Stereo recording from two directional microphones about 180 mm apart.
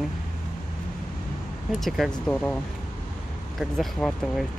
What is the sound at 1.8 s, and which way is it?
Speech, 5° left (ahead or behind).